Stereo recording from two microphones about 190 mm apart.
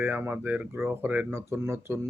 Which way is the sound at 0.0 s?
10° right (ahead or behind).